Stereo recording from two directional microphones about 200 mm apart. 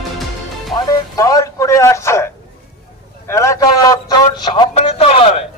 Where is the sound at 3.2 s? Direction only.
15° left (ahead or behind).